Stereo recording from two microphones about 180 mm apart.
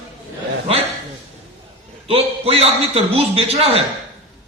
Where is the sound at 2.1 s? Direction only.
35° right (ahead or behind).